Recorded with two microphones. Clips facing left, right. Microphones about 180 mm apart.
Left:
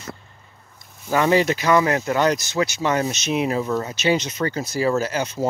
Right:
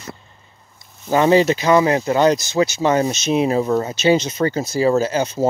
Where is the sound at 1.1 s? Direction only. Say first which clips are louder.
Right 4 dB; 25° right (ahead or behind).